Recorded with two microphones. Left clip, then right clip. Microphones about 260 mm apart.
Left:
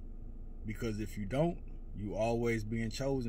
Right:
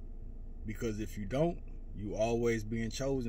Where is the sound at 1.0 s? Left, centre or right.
Left.